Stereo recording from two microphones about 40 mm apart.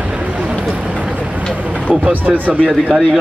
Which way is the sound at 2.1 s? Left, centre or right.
Right.